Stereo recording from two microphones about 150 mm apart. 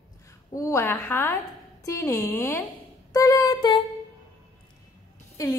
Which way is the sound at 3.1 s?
25° left (ahead or behind).